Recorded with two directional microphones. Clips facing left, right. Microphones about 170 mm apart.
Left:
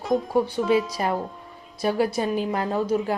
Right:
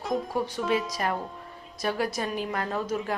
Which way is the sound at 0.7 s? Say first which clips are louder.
Left 3 dB; 30° left (ahead or behind).